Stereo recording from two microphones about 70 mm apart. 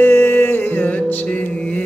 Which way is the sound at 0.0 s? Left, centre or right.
Left.